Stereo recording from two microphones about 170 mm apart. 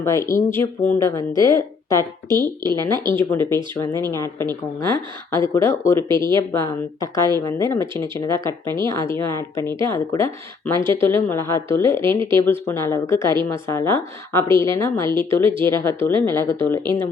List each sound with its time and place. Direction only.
0.0 s speech: 15° left (ahead or behind)